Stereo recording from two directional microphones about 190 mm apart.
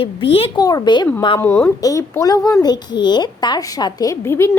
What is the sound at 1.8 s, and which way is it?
A child's voice, 20° left (ahead or behind).